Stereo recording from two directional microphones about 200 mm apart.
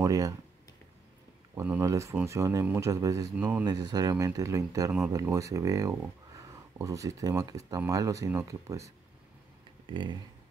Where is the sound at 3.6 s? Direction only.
20° right (ahead or behind).